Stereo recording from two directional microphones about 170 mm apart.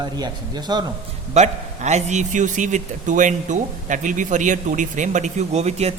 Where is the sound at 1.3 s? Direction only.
40° right (ahead or behind).